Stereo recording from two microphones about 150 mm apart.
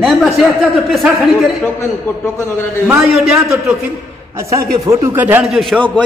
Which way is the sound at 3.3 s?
15° right (ahead or behind).